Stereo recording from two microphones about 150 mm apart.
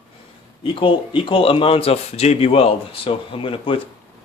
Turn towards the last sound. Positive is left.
turn(degrees=35)  # may be behind; listen again after turning